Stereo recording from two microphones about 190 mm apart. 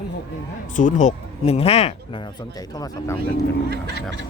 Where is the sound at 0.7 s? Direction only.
40° left (ahead or behind).